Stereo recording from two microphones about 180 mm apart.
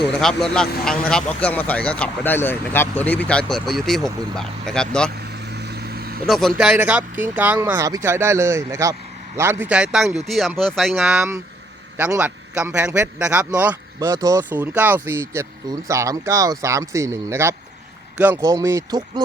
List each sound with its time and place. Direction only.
0.2 s speech: centre (ahead or behind)
5.1 s vehicle: 65° right (ahead or behind)
6.2 s speech: centre (ahead or behind); by 19.2 s 25° right (ahead or behind)